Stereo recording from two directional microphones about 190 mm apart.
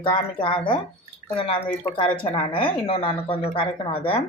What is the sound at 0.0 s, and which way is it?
Speech, 25° left (ahead or behind).